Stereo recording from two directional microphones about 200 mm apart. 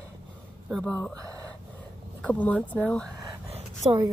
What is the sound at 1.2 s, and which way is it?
Speech, 15° right (ahead or behind).